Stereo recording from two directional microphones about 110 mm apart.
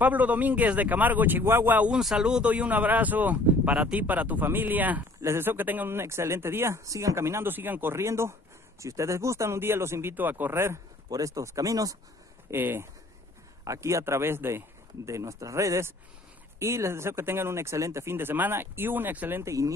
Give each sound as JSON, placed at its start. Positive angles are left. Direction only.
{"t": 0.0, "sound": "a man's voice", "side_deg": -15}
{"t": 12.4, "sound": "speech", "side_deg": -20}